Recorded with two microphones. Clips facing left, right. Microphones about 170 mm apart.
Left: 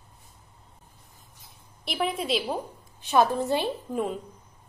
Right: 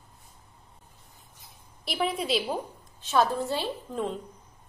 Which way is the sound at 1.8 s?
Centre (ahead or behind).